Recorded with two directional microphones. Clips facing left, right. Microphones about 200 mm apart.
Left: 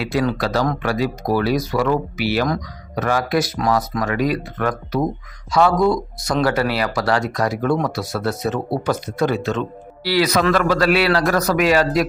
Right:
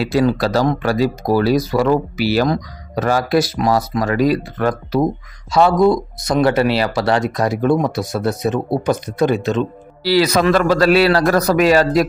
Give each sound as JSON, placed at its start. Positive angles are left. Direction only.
{"t": 0.0, "sound": "speech", "side_deg": -35}
{"t": 10.0, "sound": "speech", "side_deg": -30}